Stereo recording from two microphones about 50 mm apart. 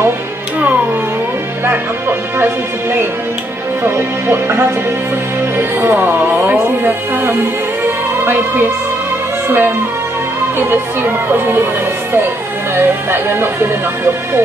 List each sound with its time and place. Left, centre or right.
1.7 s music: right
3.8 s speech: right
7.8 s music: right
9.5 s speech: right
12.7 s speech: right